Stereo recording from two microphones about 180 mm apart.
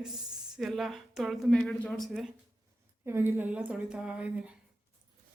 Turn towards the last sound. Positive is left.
turn(degrees=-5)  # may be behind; listen again after turning